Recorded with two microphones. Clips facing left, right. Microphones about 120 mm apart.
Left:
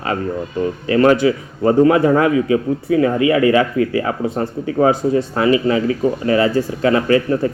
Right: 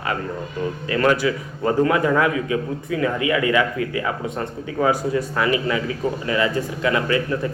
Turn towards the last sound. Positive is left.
turn(degrees=35)  # may be behind; listen again after turning